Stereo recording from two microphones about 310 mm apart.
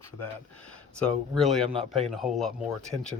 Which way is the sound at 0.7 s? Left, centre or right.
Centre.